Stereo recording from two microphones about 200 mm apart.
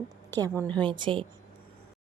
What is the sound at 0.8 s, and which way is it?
Speech, 25° right (ahead or behind).